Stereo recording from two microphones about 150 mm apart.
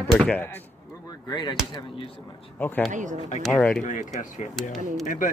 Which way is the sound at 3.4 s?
5° left (ahead or behind).